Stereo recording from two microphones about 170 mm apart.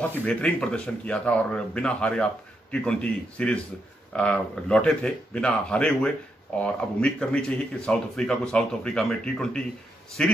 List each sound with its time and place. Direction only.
0.0 s speech: 10° left (ahead or behind)